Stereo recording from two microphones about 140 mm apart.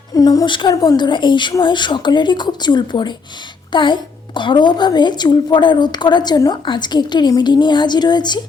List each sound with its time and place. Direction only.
0.1 s a woman's voice: 25° left (ahead or behind)